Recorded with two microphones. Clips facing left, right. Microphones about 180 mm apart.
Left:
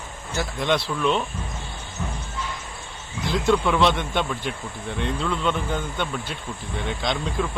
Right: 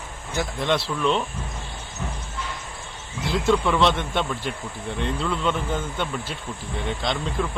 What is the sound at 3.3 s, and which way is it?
Speech, centre (ahead or behind).